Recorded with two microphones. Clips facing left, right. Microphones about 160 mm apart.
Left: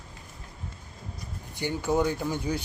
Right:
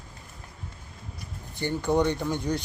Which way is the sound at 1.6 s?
10° left (ahead or behind).